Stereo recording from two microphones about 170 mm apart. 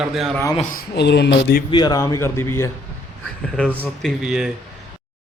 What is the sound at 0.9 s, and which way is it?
Speech, 85° left.